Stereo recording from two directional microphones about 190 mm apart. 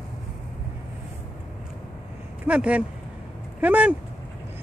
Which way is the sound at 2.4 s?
5° right (ahead or behind).